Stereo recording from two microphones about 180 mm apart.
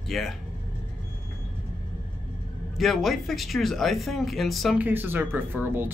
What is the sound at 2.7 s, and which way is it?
Speech, centre (ahead or behind).